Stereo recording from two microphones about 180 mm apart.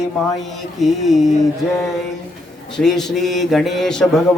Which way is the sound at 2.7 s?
Centre (ahead or behind).